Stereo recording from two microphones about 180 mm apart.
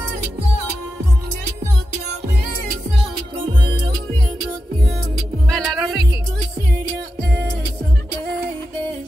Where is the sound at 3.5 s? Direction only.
25° right (ahead or behind).